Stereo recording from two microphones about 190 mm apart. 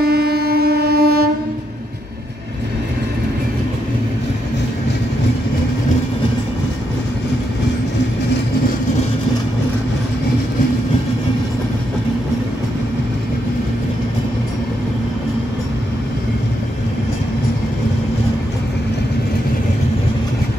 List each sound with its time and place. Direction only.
0.0 s train: 55° right (ahead or behind)